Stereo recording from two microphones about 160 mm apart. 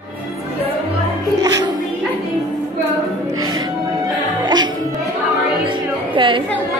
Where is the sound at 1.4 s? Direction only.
25° right (ahead or behind).